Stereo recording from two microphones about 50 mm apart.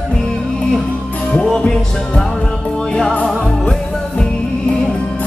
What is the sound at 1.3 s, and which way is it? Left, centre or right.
Music, centre.